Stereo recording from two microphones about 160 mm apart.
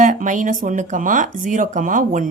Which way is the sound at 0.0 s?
55° right (ahead or behind).